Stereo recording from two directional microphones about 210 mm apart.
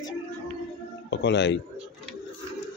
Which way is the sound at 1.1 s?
55° left (ahead or behind).